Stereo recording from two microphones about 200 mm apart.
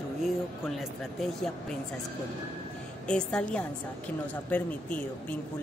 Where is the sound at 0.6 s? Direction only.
Centre (ahead or behind).